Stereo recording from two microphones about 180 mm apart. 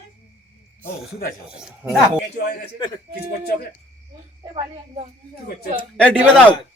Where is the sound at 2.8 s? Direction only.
25° left (ahead or behind).